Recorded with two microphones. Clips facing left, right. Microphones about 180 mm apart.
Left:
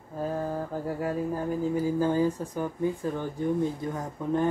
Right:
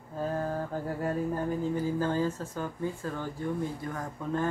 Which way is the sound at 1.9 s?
15° left (ahead or behind).